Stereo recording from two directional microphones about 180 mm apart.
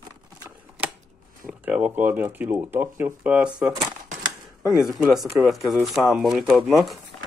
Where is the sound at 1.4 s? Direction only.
5° right (ahead or behind).